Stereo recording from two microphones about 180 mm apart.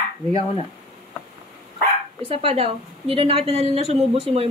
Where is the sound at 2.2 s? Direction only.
30° right (ahead or behind).